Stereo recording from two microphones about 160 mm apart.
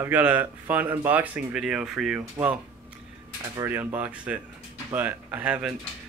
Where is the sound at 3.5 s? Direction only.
10° right (ahead or behind).